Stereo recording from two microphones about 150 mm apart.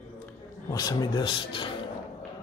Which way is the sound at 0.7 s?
25° left (ahead or behind).